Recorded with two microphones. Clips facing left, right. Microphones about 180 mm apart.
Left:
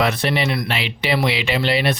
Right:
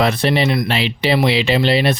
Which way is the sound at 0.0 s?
30° right (ahead or behind).